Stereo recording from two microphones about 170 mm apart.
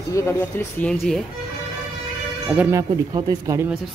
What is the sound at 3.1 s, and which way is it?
Speech, 25° right (ahead or behind).